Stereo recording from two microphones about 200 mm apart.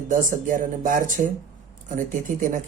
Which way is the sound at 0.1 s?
40° right (ahead or behind).